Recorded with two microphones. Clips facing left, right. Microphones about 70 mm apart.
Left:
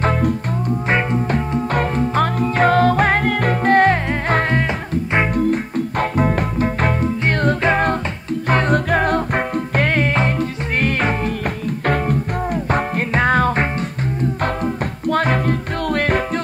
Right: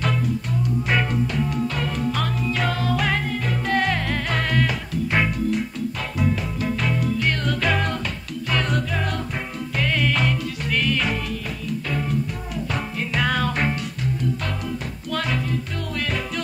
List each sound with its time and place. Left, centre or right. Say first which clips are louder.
0.2 s music: left 5 dB; left
3.3 s music: left 8 dB; left
3.6 s music: left 9 dB; left
5.3 s music: left 6 dB; left